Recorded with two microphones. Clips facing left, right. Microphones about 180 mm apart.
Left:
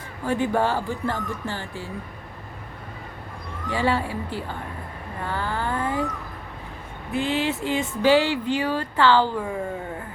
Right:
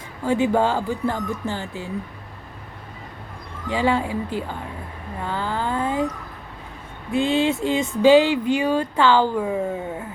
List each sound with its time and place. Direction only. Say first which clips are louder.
0.3 s speech: right 3 dB; 15° right (ahead or behind)
3.7 s speech: right 3 dB; 15° right (ahead or behind)
7.1 s speech: right 5 dB; 20° right (ahead or behind)